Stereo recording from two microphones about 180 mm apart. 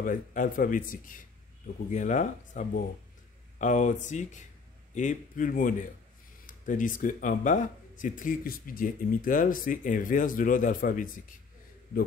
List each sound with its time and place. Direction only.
0.0 s speech: 45° left (ahead or behind)